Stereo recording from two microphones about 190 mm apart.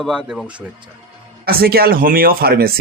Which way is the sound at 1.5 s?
50° right (ahead or behind).